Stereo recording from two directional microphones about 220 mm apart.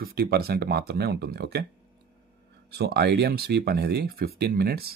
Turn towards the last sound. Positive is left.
turn(degrees=-45)  # may be behind; listen again after turning